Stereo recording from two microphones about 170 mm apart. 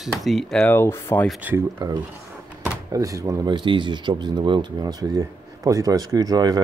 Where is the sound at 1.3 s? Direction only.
10° right (ahead or behind).